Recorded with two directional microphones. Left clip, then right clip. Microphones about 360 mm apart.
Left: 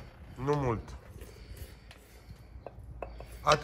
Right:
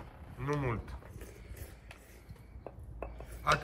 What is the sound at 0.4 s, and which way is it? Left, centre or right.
Speech, centre.